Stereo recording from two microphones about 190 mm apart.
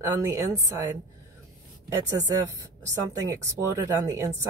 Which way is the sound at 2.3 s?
15° right (ahead or behind).